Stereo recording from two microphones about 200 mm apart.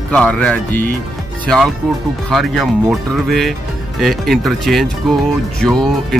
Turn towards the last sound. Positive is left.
turn(degrees=0)  # may be behind; listen again after turning